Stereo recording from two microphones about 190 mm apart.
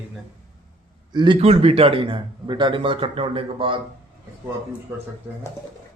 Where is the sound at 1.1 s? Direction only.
25° right (ahead or behind).